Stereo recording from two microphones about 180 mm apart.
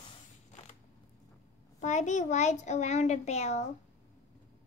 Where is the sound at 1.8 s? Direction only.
40° left (ahead or behind).